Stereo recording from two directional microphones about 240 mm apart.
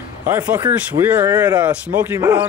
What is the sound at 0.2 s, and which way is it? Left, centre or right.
Speech, centre.